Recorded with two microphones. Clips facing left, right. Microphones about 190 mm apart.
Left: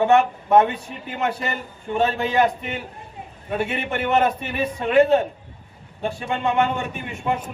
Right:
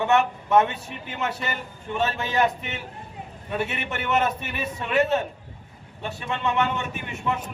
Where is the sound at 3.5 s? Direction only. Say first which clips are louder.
Left 4 dB; 30° left (ahead or behind).